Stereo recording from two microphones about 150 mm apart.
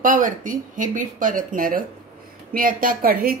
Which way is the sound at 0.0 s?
60° right (ahead or behind).